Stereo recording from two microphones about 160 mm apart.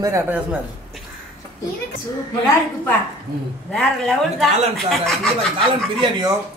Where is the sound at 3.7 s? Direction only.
5° left (ahead or behind).